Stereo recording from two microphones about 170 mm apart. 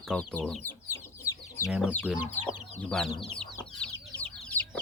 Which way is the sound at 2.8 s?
5° left (ahead or behind).